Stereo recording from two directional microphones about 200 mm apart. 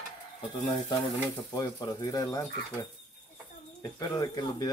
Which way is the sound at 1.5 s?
20° left (ahead or behind).